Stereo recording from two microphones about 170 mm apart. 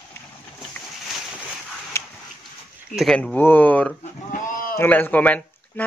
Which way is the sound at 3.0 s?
5° left (ahead or behind).